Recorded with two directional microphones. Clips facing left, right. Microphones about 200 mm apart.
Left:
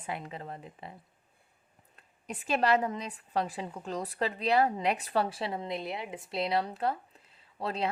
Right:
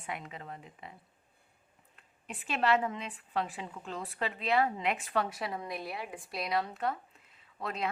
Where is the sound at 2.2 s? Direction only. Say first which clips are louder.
Left 3 dB; 40° left (ahead or behind).